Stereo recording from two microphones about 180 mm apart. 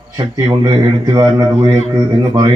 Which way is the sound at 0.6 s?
20° right (ahead or behind).